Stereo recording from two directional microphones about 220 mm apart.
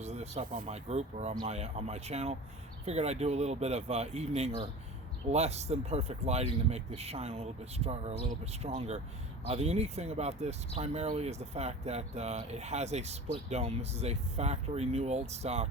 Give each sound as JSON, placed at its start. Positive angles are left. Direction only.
{"t": 0.0, "sound": "speech", "side_deg": -30}